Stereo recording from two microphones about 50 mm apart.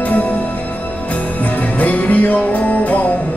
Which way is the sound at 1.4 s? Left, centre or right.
Left.